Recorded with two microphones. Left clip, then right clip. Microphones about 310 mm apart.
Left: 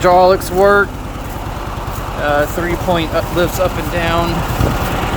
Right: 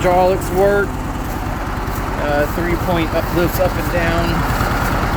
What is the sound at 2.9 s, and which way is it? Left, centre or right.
Speech, centre.